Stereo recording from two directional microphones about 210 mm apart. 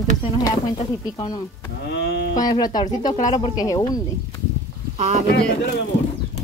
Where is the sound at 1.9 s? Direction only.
55° left (ahead or behind).